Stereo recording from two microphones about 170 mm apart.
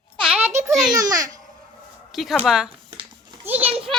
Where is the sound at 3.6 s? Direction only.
35° right (ahead or behind).